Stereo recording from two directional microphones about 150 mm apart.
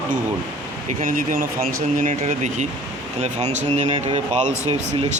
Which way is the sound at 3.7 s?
50° right (ahead or behind).